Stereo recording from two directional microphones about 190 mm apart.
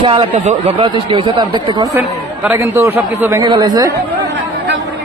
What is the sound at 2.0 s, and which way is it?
A man's voice, 10° right (ahead or behind).